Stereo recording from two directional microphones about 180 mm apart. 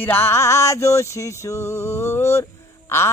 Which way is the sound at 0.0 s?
10° left (ahead or behind).